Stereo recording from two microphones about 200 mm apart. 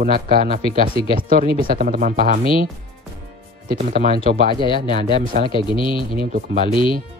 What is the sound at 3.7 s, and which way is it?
Speech, 50° right (ahead or behind).